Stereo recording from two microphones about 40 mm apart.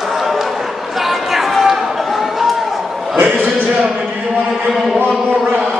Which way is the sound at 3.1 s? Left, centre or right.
Right.